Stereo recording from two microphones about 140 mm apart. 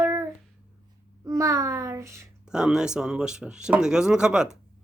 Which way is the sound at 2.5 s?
5° right (ahead or behind).